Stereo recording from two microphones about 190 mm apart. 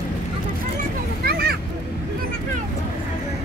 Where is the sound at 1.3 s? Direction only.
55° right (ahead or behind).